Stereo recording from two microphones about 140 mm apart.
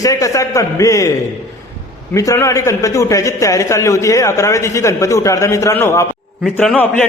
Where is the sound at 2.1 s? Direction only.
20° left (ahead or behind).